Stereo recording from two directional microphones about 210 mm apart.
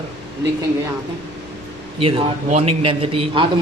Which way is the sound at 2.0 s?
25° right (ahead or behind).